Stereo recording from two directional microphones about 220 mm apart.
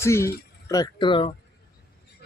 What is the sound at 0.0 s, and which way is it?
Speech, 10° left (ahead or behind).